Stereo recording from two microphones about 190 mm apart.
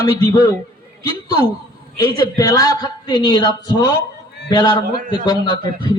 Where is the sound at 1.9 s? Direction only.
20° left (ahead or behind).